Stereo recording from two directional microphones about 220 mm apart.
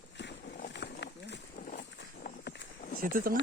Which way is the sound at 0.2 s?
50° left (ahead or behind).